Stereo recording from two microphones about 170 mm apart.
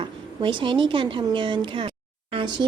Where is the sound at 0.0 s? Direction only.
30° right (ahead or behind).